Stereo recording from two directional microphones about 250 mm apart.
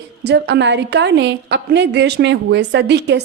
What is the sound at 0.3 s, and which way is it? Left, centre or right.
A woman's voice, right.